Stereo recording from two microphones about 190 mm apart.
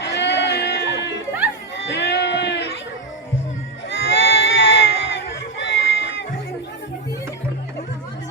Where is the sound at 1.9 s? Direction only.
70° left (ahead or behind).